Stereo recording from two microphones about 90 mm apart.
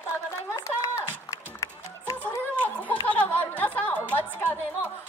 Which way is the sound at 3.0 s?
15° left (ahead or behind).